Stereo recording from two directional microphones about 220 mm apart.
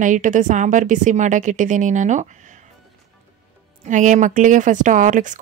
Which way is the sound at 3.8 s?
35° right (ahead or behind).